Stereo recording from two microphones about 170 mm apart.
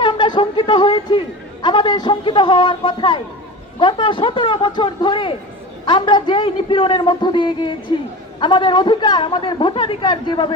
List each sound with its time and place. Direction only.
0.0 s a man's voice: 25° left (ahead or behind)